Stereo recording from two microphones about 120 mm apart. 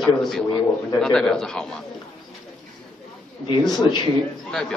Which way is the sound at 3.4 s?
40° left (ahead or behind).